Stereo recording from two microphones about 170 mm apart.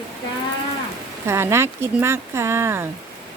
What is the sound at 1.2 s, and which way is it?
Speech, 15° right (ahead or behind).